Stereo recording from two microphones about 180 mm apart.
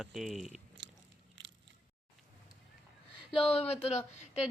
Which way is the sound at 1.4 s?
90° right.